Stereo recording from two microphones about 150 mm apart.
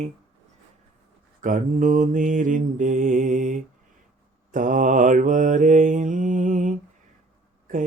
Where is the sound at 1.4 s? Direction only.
60° right (ahead or behind).